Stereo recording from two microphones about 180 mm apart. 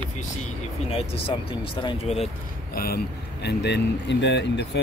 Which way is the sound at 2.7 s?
60° left (ahead or behind).